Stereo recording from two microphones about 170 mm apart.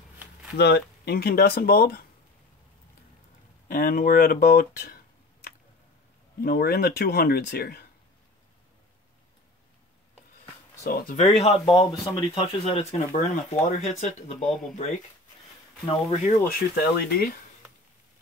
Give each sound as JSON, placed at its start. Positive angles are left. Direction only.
{"t": 0.6, "sound": "speech", "side_deg": 75}
{"t": 3.6, "sound": "speech", "side_deg": 55}
{"t": 6.4, "sound": "speech", "side_deg": 65}
{"t": 10.9, "sound": "speech", "side_deg": 60}
{"t": 11.3, "sound": "speech", "side_deg": 35}
{"t": 15.8, "sound": "speech", "side_deg": 35}
{"t": 16.4, "sound": "speech", "side_deg": 70}